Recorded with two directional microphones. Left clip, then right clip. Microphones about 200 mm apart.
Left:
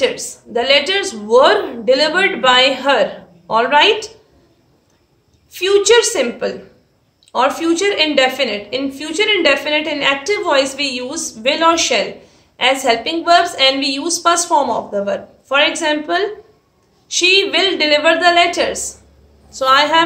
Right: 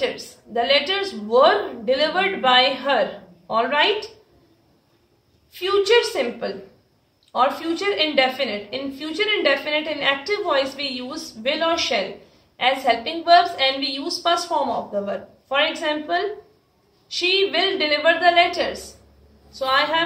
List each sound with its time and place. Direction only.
0.0 s a woman's voice: 45° left (ahead or behind)
5.5 s a woman's voice: 45° left (ahead or behind)